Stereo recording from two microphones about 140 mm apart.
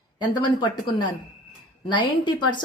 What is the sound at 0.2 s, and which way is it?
Speech, 35° left (ahead or behind).